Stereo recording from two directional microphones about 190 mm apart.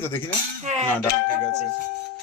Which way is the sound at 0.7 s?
40° right (ahead or behind).